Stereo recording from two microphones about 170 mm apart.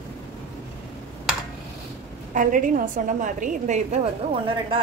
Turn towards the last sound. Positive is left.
turn(degrees=-35)  # may be behind; listen again after turning